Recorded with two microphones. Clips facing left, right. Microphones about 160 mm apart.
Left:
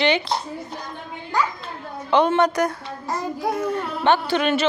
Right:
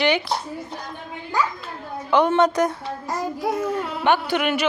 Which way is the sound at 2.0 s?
20° left (ahead or behind).